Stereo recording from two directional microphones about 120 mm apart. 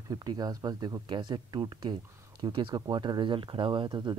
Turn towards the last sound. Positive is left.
turn(degrees=-40)  # may be behind; listen again after turning